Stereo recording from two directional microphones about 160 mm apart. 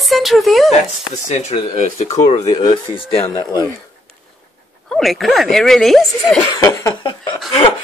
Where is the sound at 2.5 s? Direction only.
30° left (ahead or behind).